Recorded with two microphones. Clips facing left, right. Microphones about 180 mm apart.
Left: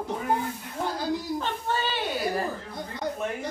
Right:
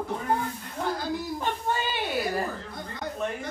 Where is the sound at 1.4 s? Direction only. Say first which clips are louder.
Even; 15° right (ahead or behind).